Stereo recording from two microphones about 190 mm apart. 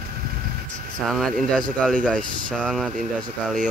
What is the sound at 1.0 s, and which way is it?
Speech, centre (ahead or behind).